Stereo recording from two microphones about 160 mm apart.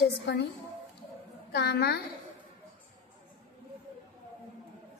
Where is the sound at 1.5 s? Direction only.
90° left.